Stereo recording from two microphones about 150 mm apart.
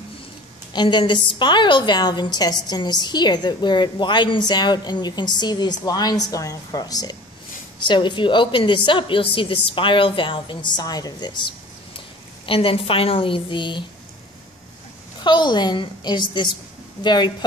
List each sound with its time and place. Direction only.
0.7 s a woman's voice: 30° left (ahead or behind)
15.1 s a woman's voice: 30° left (ahead or behind)